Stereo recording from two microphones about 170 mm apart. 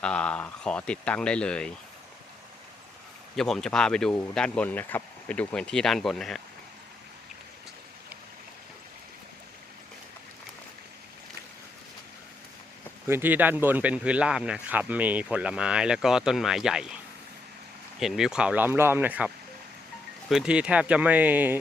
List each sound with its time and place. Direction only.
0.0 s speech: 5° left (ahead or behind)
3.3 s speech: 5° left (ahead or behind)
13.1 s speech: 10° right (ahead or behind)
18.0 s speech: centre (ahead or behind)
20.3 s speech: 5° right (ahead or behind)